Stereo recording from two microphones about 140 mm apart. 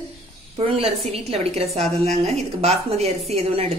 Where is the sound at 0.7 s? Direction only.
45° right (ahead or behind).